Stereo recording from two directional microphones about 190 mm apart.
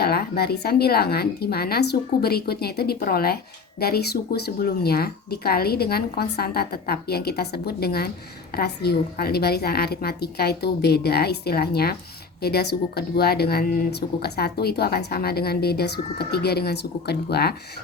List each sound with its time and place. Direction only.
0.0 s speech: 55° left (ahead or behind)